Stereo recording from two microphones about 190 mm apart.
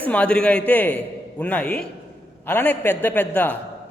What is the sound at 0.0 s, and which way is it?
A man's voice, 5° left (ahead or behind).